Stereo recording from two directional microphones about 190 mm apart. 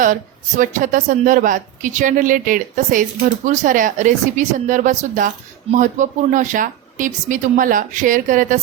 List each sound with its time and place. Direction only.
0.0 s a woman's voice: 45° right (ahead or behind)